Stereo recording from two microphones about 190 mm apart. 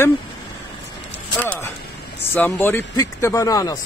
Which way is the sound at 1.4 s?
10° left (ahead or behind).